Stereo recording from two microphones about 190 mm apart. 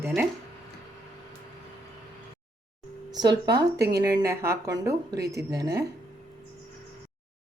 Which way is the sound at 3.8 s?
60° right (ahead or behind).